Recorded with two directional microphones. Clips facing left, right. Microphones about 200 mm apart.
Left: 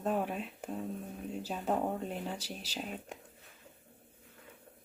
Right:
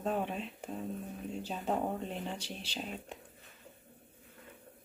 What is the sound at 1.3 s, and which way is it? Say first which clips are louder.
Speech: left 1 dB; 5° left (ahead or behind).